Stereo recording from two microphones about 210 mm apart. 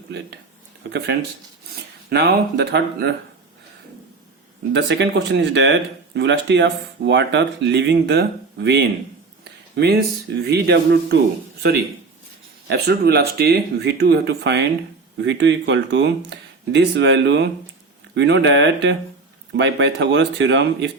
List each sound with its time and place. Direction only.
0.9 s speech: 55° right (ahead or behind)
4.7 s speech: 55° right (ahead or behind)
9.4 s a sound: 50° right (ahead or behind)
10.4 s speech: 50° right (ahead or behind)
12.6 s speech: 50° right (ahead or behind)